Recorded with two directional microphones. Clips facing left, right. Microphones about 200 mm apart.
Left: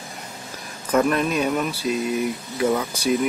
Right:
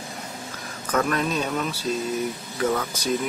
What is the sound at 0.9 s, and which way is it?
Speech, 10° left (ahead or behind).